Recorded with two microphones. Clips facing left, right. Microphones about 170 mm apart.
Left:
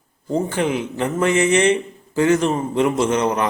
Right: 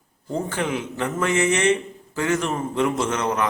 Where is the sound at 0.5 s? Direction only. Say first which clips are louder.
Left 5 dB; 20° left (ahead or behind).